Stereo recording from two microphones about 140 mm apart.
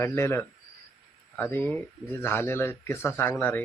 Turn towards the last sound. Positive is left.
turn(degrees=15)  # may be behind; listen again after turning